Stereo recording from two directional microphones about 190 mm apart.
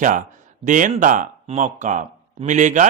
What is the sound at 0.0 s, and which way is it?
Speech, 40° right (ahead or behind).